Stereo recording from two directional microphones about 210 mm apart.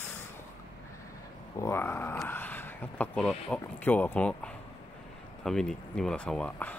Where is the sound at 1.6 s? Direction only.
10° left (ahead or behind).